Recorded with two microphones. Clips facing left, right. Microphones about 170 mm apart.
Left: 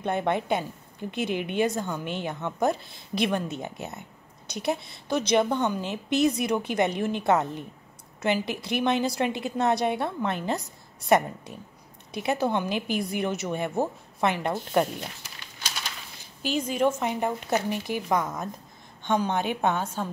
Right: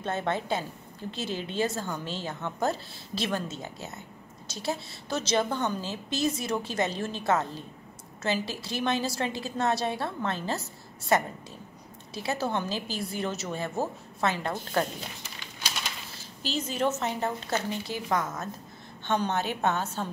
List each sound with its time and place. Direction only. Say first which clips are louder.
0.0 s a woman's voice: left 4 dB; 15° left (ahead or behind)
16.5 s speech: left 4 dB; 10° left (ahead or behind)